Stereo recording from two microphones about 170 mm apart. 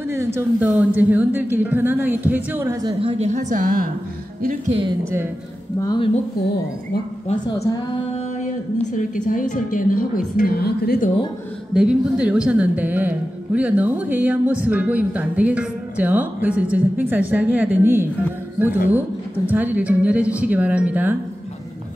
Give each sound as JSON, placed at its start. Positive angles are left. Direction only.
{"t": 0.1, "sound": "a woman's voice", "side_deg": -15}
{"t": 2.8, "sound": "a woman's voice", "side_deg": -30}
{"t": 4.6, "sound": "speech", "side_deg": -30}
{"t": 5.8, "sound": "speech", "side_deg": 25}
{"t": 7.4, "sound": "speech", "side_deg": 20}
{"t": 8.9, "sound": "a woman's voice", "side_deg": 50}
{"t": 11.7, "sound": "a woman's voice", "side_deg": -5}